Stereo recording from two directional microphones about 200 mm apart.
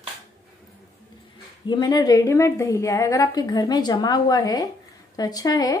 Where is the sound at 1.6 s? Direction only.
20° left (ahead or behind).